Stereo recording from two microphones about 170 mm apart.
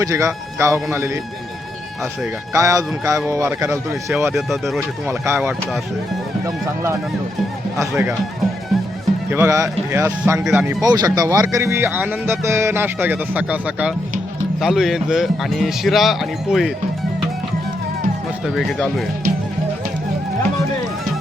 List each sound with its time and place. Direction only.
0.0 s speech: 20° right (ahead or behind)
2.5 s speech: 20° right (ahead or behind)
4.4 s speech: centre (ahead or behind)
5.0 s speech: 15° right (ahead or behind)
7.8 s speech: 10° right (ahead or behind)
9.3 s speech: 15° right (ahead or behind)
10.8 s speech: 25° right (ahead or behind); by 16.7 s centre (ahead or behind)
18.4 s speech: centre (ahead or behind)